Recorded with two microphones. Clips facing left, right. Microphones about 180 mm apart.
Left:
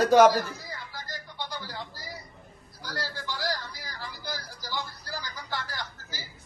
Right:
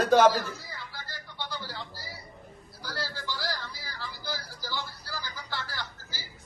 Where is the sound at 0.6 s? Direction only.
15° left (ahead or behind).